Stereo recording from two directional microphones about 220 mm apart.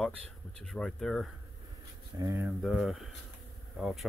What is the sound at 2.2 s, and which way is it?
Speech, 10° right (ahead or behind).